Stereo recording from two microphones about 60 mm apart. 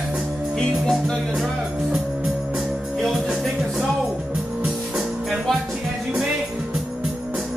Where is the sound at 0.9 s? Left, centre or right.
Centre.